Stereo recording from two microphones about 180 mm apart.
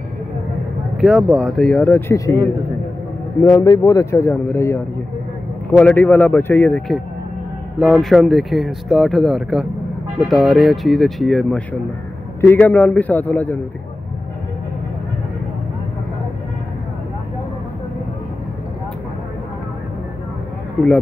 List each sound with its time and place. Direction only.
0.9 s speech: centre (ahead or behind)
12.4 s speech: 10° left (ahead or behind)